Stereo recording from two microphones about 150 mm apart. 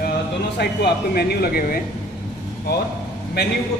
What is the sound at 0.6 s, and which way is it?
Speech, 90° left.